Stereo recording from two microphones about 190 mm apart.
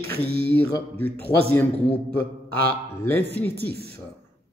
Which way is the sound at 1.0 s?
10° left (ahead or behind).